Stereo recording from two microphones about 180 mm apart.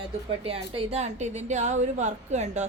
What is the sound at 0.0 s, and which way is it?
A woman's voice, 30° right (ahead or behind).